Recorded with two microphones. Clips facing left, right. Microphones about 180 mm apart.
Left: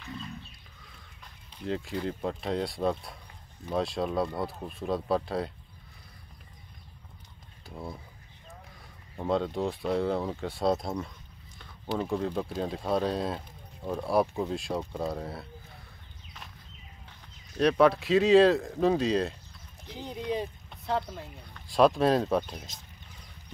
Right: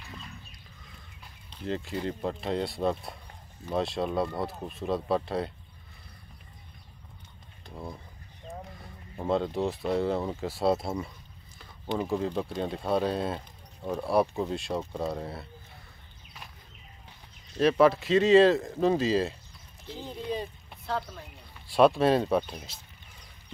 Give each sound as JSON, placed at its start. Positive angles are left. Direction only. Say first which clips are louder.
{"t": 1.6, "sound": "speech", "louder": "even", "side_deg": 0}
{"t": 7.6, "sound": "speech", "louder": "even", "side_deg": 5}
{"t": 9.1, "sound": "speech", "louder": "right 1 dB", "side_deg": 0}
{"t": 17.6, "sound": "speech", "louder": "right 1 dB", "side_deg": 0}
{"t": 20.2, "sound": "speech", "louder": "left 2 dB", "side_deg": 15}
{"t": 21.5, "sound": "speech", "louder": "right 1 dB", "side_deg": -5}